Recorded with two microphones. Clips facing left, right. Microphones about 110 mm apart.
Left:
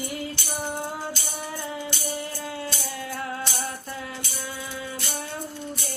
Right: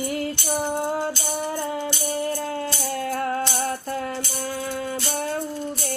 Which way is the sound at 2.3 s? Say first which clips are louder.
Right 5 dB; 45° right (ahead or behind).